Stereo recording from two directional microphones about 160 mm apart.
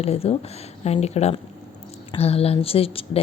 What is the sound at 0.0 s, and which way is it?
Speech, 40° left (ahead or behind).